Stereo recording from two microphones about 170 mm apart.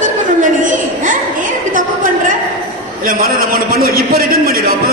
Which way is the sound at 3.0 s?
60° right (ahead or behind).